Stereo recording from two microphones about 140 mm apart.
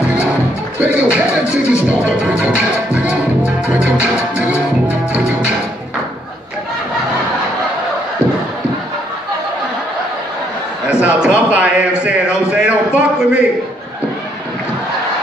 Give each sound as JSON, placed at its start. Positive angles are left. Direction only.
{"t": 0.7, "sound": "music", "side_deg": -10}
{"t": 10.9, "sound": "a man's voice", "side_deg": -10}
{"t": 12.0, "sound": "music", "side_deg": -10}